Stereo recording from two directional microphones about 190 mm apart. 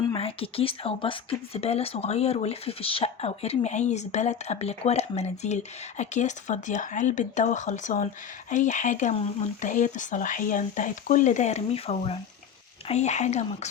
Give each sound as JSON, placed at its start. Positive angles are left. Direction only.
{"t": 0.0, "sound": "speech", "side_deg": 25}